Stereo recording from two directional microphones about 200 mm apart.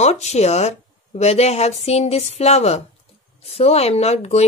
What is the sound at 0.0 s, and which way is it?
Speech, 35° left (ahead or behind).